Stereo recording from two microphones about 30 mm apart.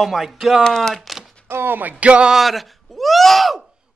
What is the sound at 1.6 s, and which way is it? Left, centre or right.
Music, right.